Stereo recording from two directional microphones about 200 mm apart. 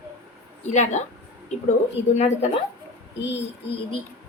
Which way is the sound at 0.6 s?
35° left (ahead or behind).